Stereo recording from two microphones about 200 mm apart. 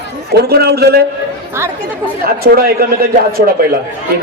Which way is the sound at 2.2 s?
50° right (ahead or behind).